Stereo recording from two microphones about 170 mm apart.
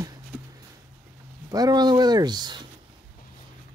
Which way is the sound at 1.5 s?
20° right (ahead or behind).